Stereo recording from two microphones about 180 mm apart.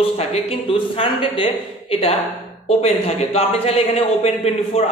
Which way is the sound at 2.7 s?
35° left (ahead or behind).